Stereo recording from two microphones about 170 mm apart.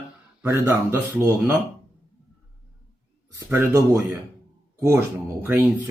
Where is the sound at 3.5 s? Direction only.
10° right (ahead or behind).